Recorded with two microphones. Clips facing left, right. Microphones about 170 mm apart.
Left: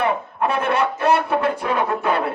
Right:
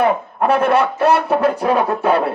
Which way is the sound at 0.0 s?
35° right (ahead or behind).